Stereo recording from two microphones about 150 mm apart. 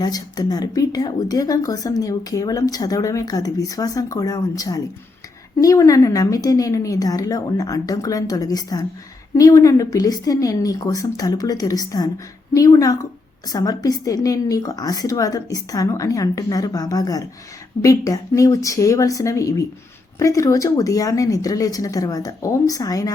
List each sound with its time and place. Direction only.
0.0 s speech: 25° left (ahead or behind)